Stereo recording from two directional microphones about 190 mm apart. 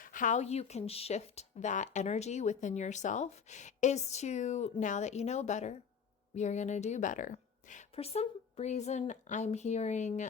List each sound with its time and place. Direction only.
0.0 s speech: 45° left (ahead or behind)